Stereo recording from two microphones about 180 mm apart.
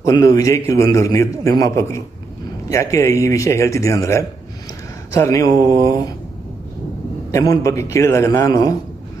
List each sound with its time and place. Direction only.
0.0 s a man's voice: 20° left (ahead or behind)
7.2 s a man's voice: 20° left (ahead or behind)